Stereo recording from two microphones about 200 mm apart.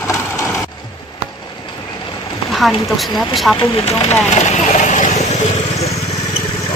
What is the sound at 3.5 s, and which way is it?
Vehicle, 25° left (ahead or behind).